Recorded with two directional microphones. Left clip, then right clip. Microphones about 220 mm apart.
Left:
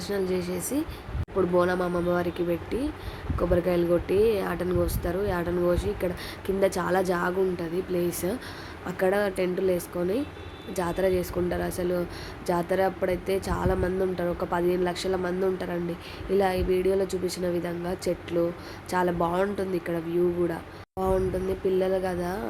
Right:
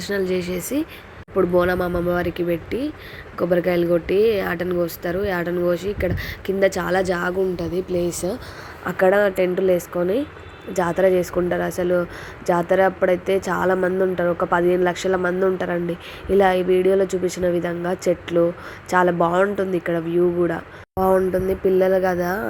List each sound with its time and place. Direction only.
0.0 s speech: 15° right (ahead or behind)